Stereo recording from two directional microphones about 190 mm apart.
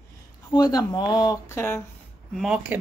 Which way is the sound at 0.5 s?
20° left (ahead or behind).